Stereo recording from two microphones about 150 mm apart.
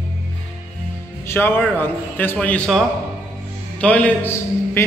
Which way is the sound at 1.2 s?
15° left (ahead or behind).